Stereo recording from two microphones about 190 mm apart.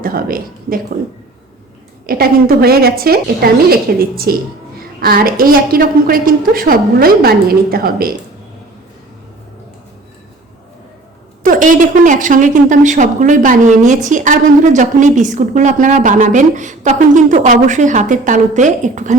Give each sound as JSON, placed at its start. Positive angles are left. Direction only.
{"t": 0.0, "sound": "speech", "side_deg": -50}
{"t": 2.0, "sound": "a woman's voice", "side_deg": -50}
{"t": 11.4, "sound": "a woman's voice", "side_deg": -45}